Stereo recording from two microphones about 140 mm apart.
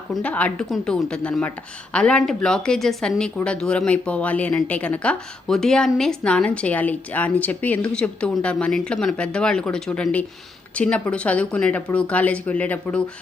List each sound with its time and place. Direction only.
0.1 s speech: 10° left (ahead or behind)